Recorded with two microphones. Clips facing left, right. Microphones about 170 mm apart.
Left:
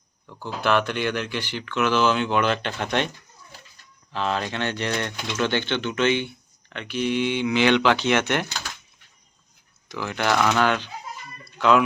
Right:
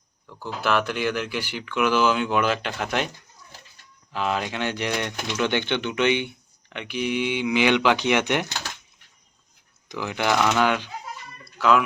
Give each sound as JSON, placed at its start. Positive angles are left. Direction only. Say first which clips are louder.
{"t": 0.3, "sound": "speech", "louder": "left 2 dB", "side_deg": -5}
{"t": 4.1, "sound": "speech", "louder": "even", "side_deg": -10}
{"t": 9.9, "sound": "speech", "louder": "even", "side_deg": -15}